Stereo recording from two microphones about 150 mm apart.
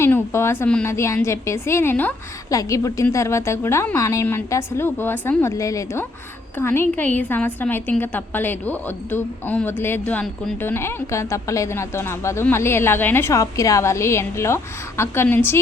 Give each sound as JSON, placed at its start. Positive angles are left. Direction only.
{"t": 0.0, "sound": "a woman's voice", "side_deg": 15}